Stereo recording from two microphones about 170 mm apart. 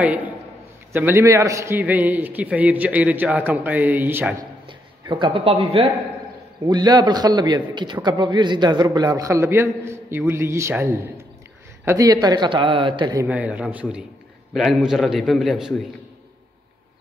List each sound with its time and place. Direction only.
0.0 s a man's voice: 10° right (ahead or behind)
4.6 s speech: 30° right (ahead or behind)
6.6 s a man's voice: 25° right (ahead or behind)
13.3 s a man's voice: 5° right (ahead or behind)